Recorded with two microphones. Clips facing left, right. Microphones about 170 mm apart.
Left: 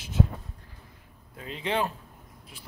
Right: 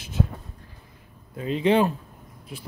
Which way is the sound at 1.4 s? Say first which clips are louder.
Right 9 dB; 20° right (ahead or behind).